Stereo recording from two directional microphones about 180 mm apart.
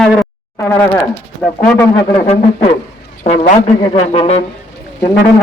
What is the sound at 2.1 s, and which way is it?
Speech, 35° left (ahead or behind).